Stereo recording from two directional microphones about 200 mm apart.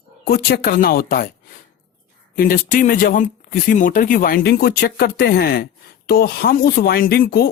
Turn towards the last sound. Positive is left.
turn(degrees=45)  # may be behind; listen again after turning